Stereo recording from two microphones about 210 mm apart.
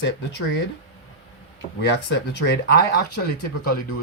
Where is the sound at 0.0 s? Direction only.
55° left (ahead or behind).